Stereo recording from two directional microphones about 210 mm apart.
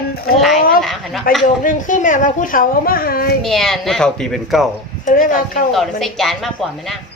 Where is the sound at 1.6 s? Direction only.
40° left (ahead or behind).